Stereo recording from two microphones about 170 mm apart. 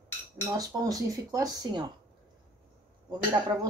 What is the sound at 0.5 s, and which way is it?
Speech, 20° right (ahead or behind).